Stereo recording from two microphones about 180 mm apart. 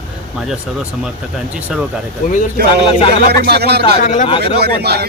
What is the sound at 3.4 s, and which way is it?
Speech, 65° right (ahead or behind).